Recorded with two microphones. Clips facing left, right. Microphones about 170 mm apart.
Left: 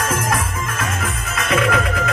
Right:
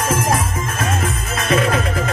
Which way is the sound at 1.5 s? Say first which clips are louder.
Right 1 dB; 30° right (ahead or behind).